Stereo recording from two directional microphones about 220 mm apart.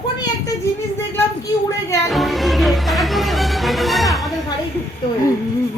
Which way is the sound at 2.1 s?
Centre (ahead or behind).